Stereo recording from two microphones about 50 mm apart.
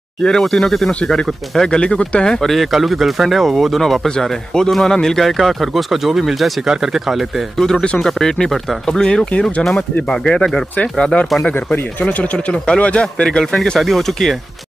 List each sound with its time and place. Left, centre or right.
0.2 s speech: centre
1.8 s speech: left
2.3 s speech: centre
8.0 s speech: centre
13.7 s speech: centre